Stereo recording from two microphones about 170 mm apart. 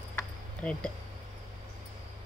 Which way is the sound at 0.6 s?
5° left (ahead or behind).